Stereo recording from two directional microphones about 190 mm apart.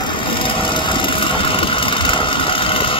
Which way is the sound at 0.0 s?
25° left (ahead or behind).